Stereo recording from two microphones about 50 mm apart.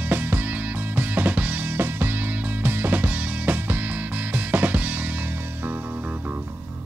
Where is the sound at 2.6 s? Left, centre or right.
Right.